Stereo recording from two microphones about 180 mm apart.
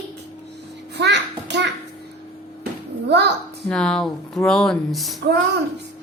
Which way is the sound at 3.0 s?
70° right (ahead or behind).